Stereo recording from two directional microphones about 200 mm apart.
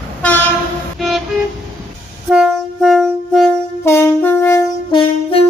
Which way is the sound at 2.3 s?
Centre (ahead or behind).